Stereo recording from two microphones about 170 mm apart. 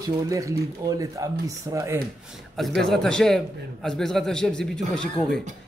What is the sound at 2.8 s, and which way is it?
A man's voice, 5° left (ahead or behind).